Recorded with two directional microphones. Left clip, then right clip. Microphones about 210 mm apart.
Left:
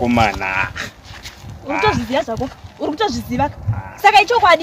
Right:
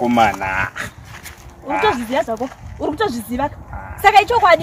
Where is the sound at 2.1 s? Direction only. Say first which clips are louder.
Even; 15° right (ahead or behind).